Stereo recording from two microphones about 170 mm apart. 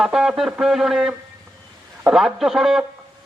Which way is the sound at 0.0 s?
5° right (ahead or behind).